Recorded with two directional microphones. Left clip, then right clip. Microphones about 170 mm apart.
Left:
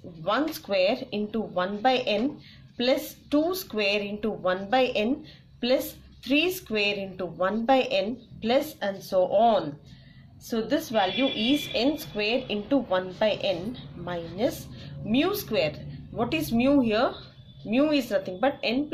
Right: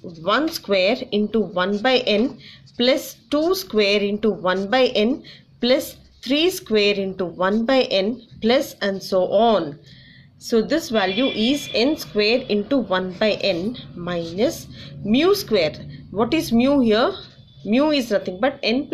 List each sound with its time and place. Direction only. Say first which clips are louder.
0.2 s speech: right 6 dB; 40° right (ahead or behind)
6.2 s a woman's voice: right 5 dB; 35° right (ahead or behind)